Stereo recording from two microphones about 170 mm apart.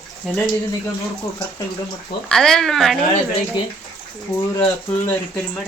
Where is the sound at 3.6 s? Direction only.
25° left (ahead or behind).